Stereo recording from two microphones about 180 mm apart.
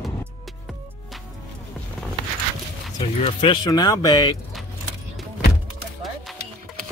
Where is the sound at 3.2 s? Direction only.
30° left (ahead or behind).